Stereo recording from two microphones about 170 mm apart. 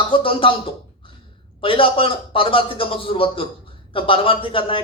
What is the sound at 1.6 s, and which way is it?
Speech, 30° left (ahead or behind).